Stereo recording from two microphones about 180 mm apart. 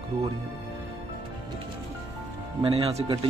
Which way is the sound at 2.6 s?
35° right (ahead or behind).